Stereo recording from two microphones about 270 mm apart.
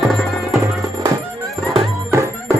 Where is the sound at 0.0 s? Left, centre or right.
Centre.